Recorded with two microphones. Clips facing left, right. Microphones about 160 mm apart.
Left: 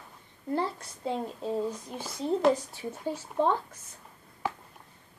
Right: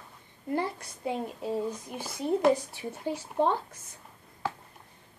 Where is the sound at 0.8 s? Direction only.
10° right (ahead or behind).